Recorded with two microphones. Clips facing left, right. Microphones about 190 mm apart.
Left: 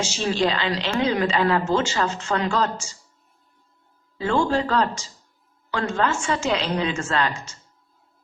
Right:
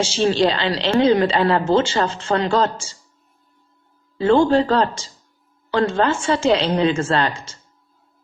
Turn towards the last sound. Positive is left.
turn(degrees=-30)  # may be behind; listen again after turning